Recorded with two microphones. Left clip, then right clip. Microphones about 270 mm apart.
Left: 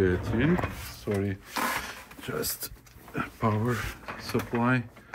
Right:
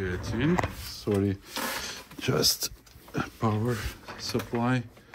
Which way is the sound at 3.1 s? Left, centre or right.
Centre.